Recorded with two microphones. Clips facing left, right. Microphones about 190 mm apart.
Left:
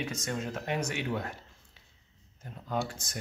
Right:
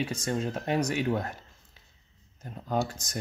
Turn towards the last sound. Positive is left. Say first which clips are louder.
# right 4 dB
turn(degrees=-40)  # may be behind; listen again after turning